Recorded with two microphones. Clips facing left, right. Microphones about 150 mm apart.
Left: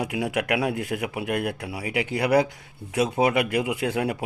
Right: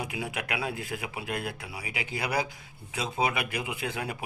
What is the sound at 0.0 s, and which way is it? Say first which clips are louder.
Speech: left 8 dB; 70° left (ahead or behind).